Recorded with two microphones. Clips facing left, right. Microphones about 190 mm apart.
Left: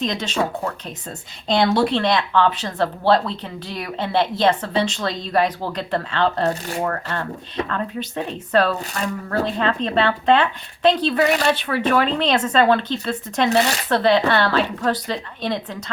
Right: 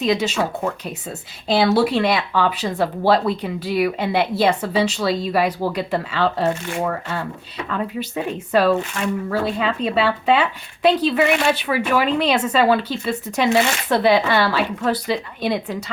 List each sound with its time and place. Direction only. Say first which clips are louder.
0.0 s speech: right 3 dB; 10° right (ahead or behind)
1.5 s speech: right 1 dB; 5° right (ahead or behind)
11.2 s speech: right 1 dB; 35° left (ahead or behind)
11.4 s speech: even; 10° right (ahead or behind)